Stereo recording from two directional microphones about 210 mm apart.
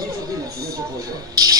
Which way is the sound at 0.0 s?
15° right (ahead or behind).